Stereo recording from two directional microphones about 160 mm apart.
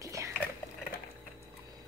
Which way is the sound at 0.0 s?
20° right (ahead or behind).